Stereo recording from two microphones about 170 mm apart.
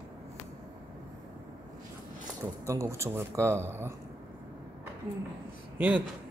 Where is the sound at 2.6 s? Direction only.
15° right (ahead or behind).